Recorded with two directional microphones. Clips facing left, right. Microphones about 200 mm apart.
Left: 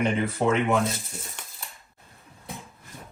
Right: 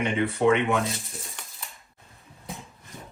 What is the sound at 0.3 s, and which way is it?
Speech, centre (ahead or behind).